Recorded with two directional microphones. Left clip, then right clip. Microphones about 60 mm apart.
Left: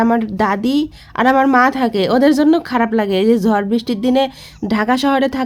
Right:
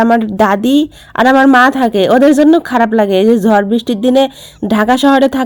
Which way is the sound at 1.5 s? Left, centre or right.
Right.